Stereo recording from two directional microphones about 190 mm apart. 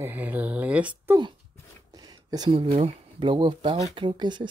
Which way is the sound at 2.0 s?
20° right (ahead or behind).